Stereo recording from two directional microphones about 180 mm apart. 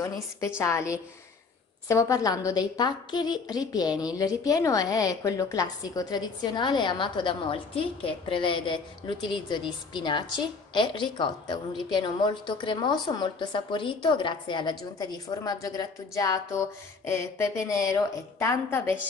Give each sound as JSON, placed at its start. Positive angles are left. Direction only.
{"t": 0.6, "sound": "a woman's voice", "side_deg": 15}